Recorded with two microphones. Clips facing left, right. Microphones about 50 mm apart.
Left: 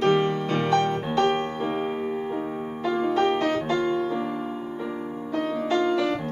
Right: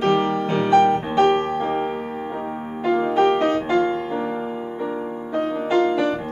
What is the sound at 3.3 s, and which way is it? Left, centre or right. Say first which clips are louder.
Music: right 5 dB; right.